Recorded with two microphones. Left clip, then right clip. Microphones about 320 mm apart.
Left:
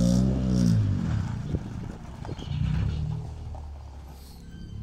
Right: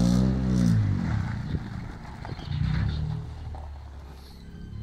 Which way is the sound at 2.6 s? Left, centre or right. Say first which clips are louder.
Right 2 dB; centre.